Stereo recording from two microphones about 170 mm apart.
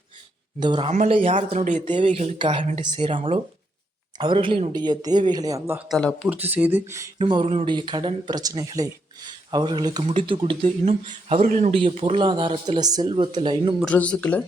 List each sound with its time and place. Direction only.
0.6 s speech: 30° right (ahead or behind)
1.5 s speech: 45° right (ahead or behind)
2.4 s speech: 30° right (ahead or behind)
4.2 s speech: 30° right (ahead or behind)
5.9 s speech: 5° left (ahead or behind)
6.2 s speech: 10° right (ahead or behind)
7.2 s speech: 30° right (ahead or behind); by 11.8 s 45° right (ahead or behind)
11.8 s speech: 35° right (ahead or behind)
13.8 s speech: 5° left (ahead or behind)